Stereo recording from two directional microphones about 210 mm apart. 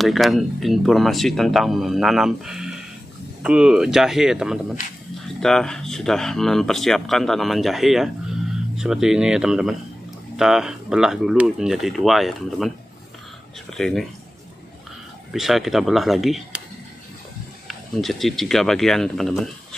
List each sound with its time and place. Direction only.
0.0 s speech: centre (ahead or behind)
13.7 s speech: centre (ahead or behind)
15.3 s speech: centre (ahead or behind)
17.6 s speech: centre (ahead or behind)